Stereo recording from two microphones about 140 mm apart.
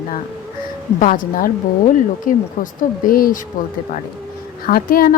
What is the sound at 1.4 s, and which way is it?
A woman's voice, 80° left.